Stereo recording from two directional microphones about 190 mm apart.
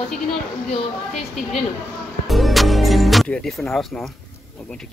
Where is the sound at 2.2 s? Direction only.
Centre (ahead or behind).